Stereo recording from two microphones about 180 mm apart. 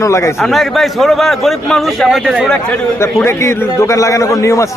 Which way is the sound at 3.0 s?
15° left (ahead or behind).